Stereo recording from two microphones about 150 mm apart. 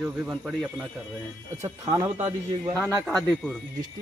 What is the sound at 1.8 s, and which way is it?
Speech, 25° right (ahead or behind).